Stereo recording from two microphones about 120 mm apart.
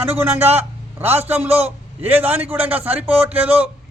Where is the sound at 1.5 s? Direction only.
15° right (ahead or behind).